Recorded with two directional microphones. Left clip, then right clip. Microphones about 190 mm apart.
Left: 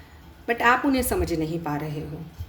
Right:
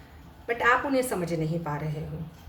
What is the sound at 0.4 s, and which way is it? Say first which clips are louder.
Speech: left 3 dB; 50° left (ahead or behind).